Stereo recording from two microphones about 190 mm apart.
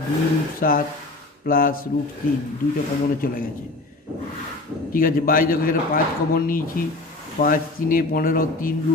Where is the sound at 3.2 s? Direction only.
45° left (ahead or behind).